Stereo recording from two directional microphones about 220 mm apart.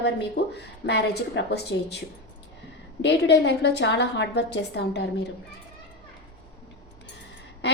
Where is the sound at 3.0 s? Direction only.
50° left (ahead or behind).